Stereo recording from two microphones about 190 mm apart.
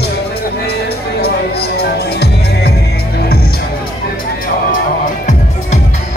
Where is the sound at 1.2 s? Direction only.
55° left (ahead or behind).